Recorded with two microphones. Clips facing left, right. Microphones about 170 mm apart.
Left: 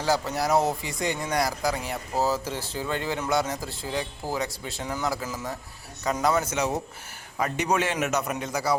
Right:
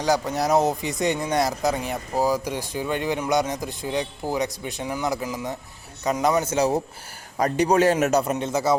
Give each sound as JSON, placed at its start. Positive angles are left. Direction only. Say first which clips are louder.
{"t": 0.0, "sound": "speech", "louder": "right 3 dB", "side_deg": -15}
{"t": 6.5, "sound": "a man's voice", "louder": "right 6 dB", "side_deg": -30}